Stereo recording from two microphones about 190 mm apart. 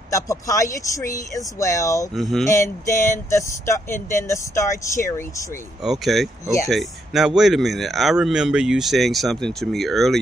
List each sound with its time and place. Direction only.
0.1 s speech: 15° left (ahead or behind)
2.1 s speech: centre (ahead or behind)
2.4 s speech: 15° left (ahead or behind)
5.9 s speech: centre (ahead or behind)
6.4 s speech: 15° left (ahead or behind)
6.7 s speech: centre (ahead or behind)